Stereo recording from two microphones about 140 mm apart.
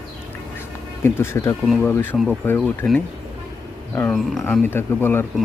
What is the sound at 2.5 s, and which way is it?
Speech, 10° left (ahead or behind).